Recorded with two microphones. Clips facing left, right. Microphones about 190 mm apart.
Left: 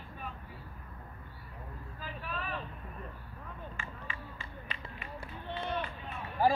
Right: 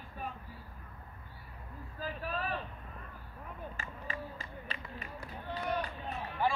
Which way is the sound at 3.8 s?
40° right (ahead or behind).